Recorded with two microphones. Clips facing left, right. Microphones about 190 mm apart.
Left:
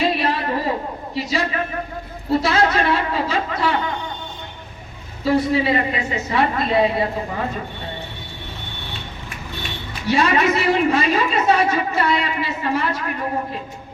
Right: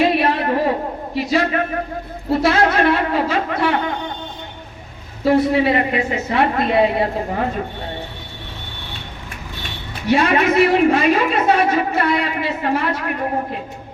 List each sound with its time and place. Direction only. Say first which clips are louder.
0.0 s a sound: right 4 dB; 55° right (ahead or behind)
1.1 s a woman's voice: right 5 dB; 55° right (ahead or behind)
5.2 s a woman's voice: right 3 dB; 55° right (ahead or behind)
10.1 s a woman's voice: right 2 dB; 55° right (ahead or behind)